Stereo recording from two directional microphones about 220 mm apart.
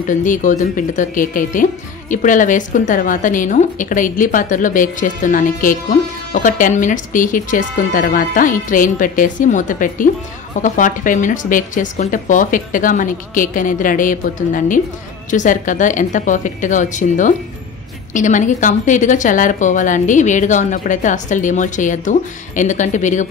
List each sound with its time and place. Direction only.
0.1 s a woman's voice: 35° left (ahead or behind)